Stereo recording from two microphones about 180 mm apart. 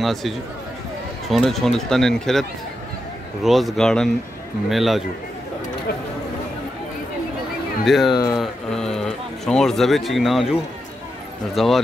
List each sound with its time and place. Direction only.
0.0 s speech: centre (ahead or behind)
3.4 s speech: centre (ahead or behind)
7.8 s speech: centre (ahead or behind)
8.1 s speech: 20° left (ahead or behind)
8.4 s speech: 5° left (ahead or behind)
11.5 s speech: centre (ahead or behind)